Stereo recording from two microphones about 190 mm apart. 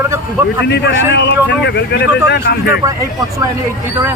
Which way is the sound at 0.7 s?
65° left (ahead or behind).